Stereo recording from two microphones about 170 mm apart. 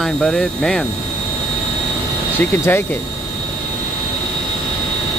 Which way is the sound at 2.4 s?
10° left (ahead or behind).